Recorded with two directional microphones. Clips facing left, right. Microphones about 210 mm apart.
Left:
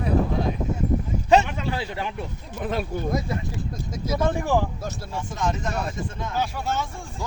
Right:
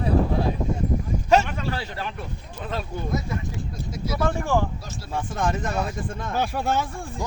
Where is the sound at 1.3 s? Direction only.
15° left (ahead or behind).